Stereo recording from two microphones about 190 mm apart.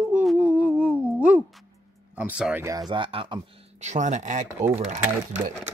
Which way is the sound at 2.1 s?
10° right (ahead or behind).